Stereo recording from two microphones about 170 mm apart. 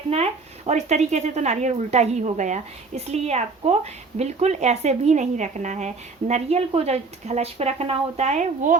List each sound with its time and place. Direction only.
0.1 s speech: 35° right (ahead or behind)